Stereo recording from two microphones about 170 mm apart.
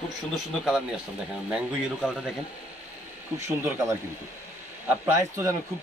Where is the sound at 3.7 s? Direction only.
15° right (ahead or behind).